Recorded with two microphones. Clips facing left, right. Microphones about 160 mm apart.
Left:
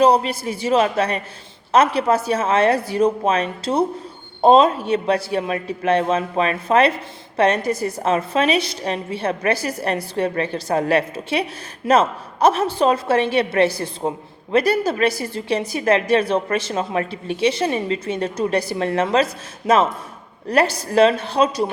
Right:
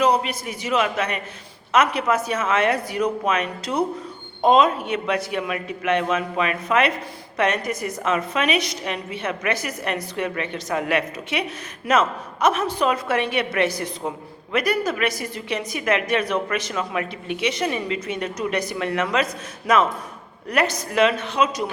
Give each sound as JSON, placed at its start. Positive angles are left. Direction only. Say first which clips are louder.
{"t": 0.0, "sound": "a man's voice", "louder": "left 4 dB", "side_deg": 30}